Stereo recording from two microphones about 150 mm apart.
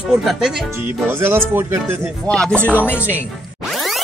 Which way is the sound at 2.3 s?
5° left (ahead or behind).